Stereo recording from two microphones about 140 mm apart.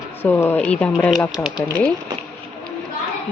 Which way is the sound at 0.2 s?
15° left (ahead or behind).